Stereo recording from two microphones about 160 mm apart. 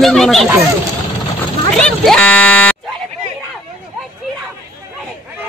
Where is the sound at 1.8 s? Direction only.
5° left (ahead or behind).